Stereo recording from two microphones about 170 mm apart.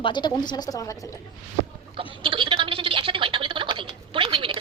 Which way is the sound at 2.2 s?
30° right (ahead or behind).